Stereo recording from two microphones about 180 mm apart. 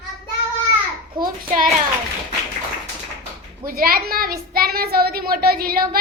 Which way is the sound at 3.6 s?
55° right (ahead or behind).